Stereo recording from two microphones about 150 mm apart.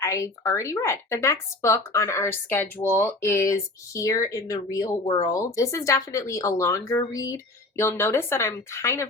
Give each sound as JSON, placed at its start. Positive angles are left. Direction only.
{"t": 0.0, "sound": "speech", "side_deg": 20}